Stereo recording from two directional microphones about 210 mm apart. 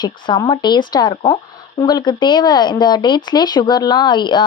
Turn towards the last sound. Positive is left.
turn(degrees=20)  # may be behind; listen again after turning